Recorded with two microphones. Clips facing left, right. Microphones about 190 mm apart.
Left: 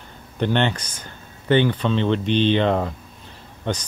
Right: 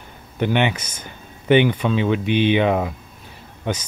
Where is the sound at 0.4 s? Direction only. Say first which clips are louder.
Right 1 dB; 10° right (ahead or behind).